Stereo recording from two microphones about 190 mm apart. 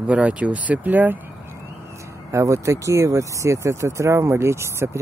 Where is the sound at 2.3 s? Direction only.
15° right (ahead or behind).